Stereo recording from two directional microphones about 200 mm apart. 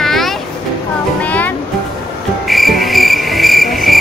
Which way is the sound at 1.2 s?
5° left (ahead or behind).